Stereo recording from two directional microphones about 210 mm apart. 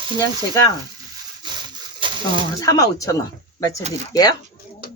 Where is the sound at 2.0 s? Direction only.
25° right (ahead or behind).